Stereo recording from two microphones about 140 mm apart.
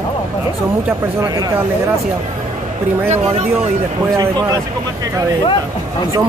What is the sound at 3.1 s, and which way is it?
Speech, 50° right (ahead or behind).